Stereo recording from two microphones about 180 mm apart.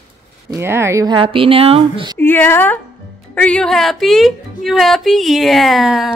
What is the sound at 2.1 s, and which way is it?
A woman's voice, 10° left (ahead or behind).